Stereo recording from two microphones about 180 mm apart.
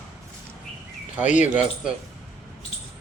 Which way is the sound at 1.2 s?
40° left (ahead or behind).